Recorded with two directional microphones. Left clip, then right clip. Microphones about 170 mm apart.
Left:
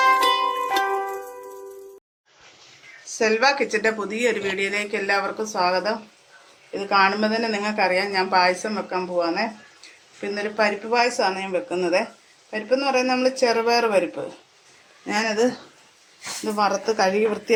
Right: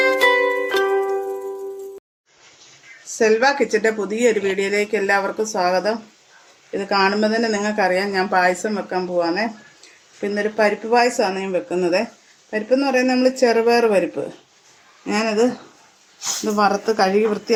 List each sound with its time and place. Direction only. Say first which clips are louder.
0.0 s music: right 2 dB; centre (ahead or behind)
3.2 s speech: right 3 dB; 45° right (ahead or behind)
15.0 s speech: right 3 dB; 55° right (ahead or behind)
16.5 s speech: right 3 dB; 65° right (ahead or behind); by 17.5 s 50° right (ahead or behind)